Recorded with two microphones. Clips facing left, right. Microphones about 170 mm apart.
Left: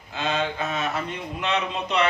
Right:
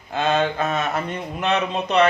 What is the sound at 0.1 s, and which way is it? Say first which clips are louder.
Speech: right 6 dB; 50° right (ahead or behind).